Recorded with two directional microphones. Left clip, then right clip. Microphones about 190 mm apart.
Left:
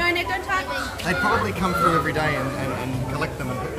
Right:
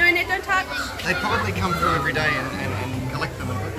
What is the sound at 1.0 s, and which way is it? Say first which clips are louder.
Speech: left 2 dB; 55° left (ahead or behind).